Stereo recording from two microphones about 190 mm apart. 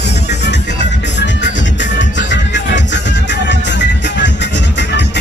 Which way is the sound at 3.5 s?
65° left (ahead or behind).